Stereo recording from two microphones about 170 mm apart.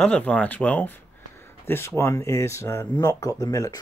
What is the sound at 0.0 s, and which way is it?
Speech, 5° left (ahead or behind).